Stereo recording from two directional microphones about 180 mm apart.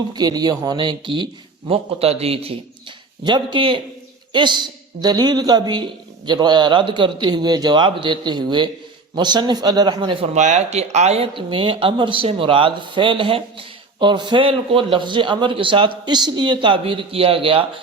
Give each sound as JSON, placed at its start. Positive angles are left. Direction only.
{"t": 0.1, "sound": "speech", "side_deg": -20}
{"t": 10.3, "sound": "speech", "side_deg": -40}